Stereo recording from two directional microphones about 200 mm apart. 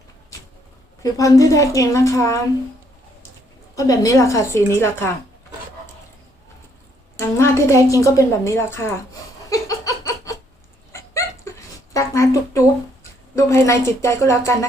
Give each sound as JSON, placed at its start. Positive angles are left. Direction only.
{"t": 1.0, "sound": "a woman's voice", "side_deg": 15}
{"t": 3.8, "sound": "a woman's voice", "side_deg": 15}
{"t": 7.2, "sound": "a woman's voice", "side_deg": 15}
{"t": 9.5, "sound": "a sound", "side_deg": 15}
{"t": 11.9, "sound": "a woman's voice", "side_deg": 15}